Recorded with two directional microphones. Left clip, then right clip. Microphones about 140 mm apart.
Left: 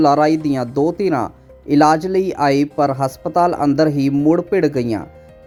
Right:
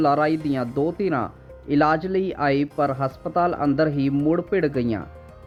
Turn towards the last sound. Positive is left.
turn(degrees=40)  # may be behind; listen again after turning